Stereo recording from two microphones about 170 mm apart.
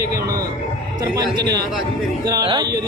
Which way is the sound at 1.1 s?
25° right (ahead or behind).